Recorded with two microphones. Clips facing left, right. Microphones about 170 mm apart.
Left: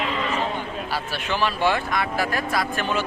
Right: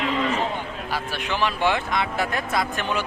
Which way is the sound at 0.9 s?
15° right (ahead or behind).